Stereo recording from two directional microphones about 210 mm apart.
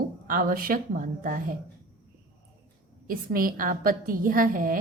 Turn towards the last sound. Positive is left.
turn(degrees=-40)  # may be behind; listen again after turning